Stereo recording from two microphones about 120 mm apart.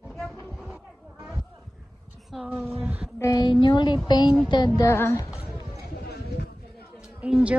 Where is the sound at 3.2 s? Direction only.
30° left (ahead or behind).